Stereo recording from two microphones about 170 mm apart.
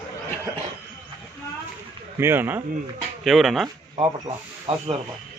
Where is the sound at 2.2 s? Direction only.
15° right (ahead or behind).